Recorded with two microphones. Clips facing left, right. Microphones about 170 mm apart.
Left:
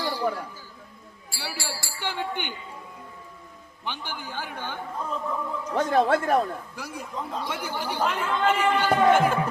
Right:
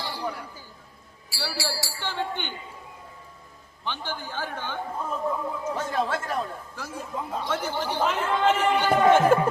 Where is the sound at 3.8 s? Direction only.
15° left (ahead or behind).